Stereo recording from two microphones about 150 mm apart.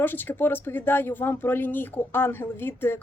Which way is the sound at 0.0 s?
10° left (ahead or behind).